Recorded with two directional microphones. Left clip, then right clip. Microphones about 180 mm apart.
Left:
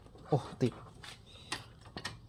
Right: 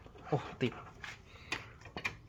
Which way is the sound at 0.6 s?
30° left (ahead or behind).